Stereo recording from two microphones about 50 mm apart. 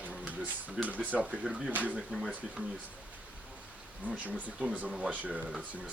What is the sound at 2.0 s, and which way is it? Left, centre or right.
Speech, centre.